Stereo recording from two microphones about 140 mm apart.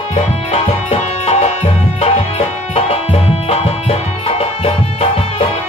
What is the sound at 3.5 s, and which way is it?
Music, 45° left (ahead or behind).